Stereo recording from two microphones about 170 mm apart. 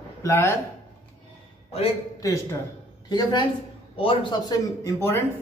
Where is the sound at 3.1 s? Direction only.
25° left (ahead or behind).